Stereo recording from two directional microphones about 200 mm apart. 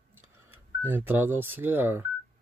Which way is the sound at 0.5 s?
10° right (ahead or behind).